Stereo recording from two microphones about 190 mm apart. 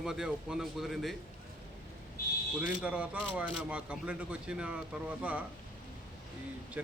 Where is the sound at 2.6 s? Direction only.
5° right (ahead or behind).